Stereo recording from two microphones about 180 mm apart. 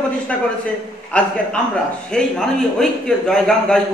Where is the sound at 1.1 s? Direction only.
5° left (ahead or behind).